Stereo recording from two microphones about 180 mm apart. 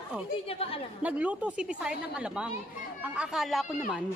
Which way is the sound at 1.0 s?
10° right (ahead or behind).